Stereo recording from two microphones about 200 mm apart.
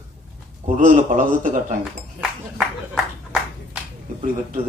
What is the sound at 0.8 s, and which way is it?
Speech, 40° right (ahead or behind).